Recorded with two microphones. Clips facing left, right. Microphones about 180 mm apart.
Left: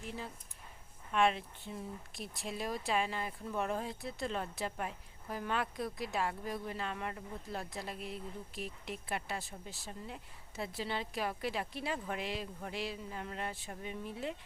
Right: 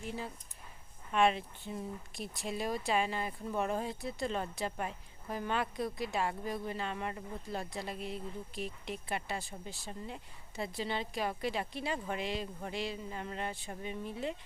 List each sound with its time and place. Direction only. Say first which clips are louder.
0.0 s speech: right 3 dB; centre (ahead or behind)